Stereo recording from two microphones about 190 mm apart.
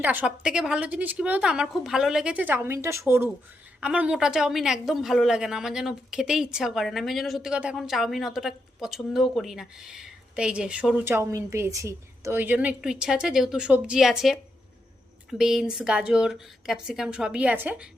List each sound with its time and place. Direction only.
0.0 s a woman's voice: 10° right (ahead or behind)